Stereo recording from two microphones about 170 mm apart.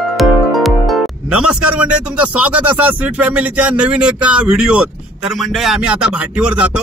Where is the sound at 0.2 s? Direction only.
Centre (ahead or behind).